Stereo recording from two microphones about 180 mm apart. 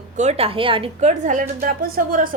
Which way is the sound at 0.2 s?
35° right (ahead or behind).